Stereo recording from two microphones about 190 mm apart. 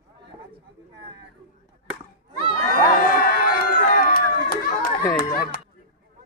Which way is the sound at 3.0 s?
45° left (ahead or behind).